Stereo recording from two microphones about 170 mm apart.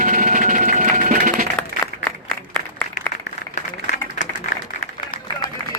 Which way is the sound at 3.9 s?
45° left (ahead or behind).